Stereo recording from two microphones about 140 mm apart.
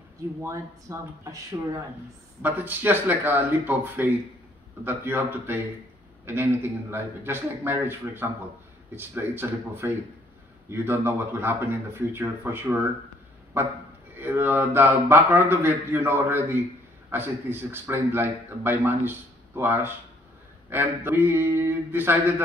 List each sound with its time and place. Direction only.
0.4 s speech: 25° right (ahead or behind)
2.4 s a man's voice: 15° right (ahead or behind)